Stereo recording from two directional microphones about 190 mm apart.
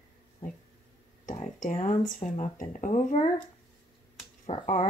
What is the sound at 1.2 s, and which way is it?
Speech, 40° left (ahead or behind).